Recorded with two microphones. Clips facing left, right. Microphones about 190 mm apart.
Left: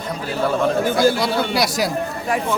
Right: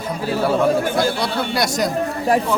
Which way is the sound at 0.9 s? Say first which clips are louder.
Left 3 dB; centre (ahead or behind).